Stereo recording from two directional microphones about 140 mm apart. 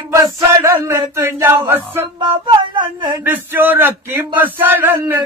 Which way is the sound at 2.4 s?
30° right (ahead or behind).